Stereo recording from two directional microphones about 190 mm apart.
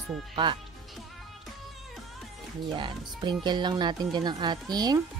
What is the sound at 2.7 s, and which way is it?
Speech, 25° right (ahead or behind).